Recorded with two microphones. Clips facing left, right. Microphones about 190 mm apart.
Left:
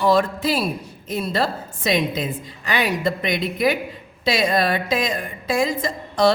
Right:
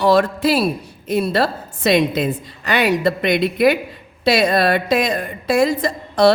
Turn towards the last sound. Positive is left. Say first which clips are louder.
# right 4 dB
turn(degrees=-65)  # may be behind; listen again after turning